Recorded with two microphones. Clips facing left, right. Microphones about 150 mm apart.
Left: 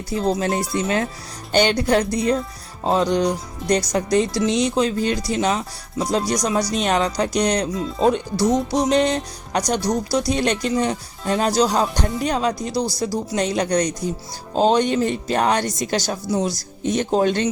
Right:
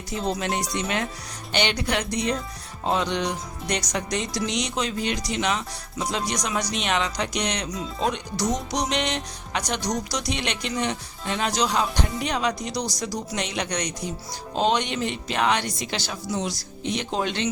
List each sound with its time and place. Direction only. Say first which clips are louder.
0.1 s speech: left 6 dB; 30° left (ahead or behind)
8.4 s music: left 7 dB; 5° left (ahead or behind)
8.8 s speech: left 8 dB; 35° left (ahead or behind)